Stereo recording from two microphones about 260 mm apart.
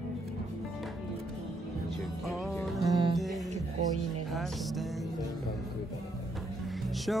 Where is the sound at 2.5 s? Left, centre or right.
Centre.